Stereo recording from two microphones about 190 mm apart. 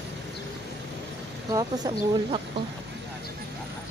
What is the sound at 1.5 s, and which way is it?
Speech, 20° right (ahead or behind).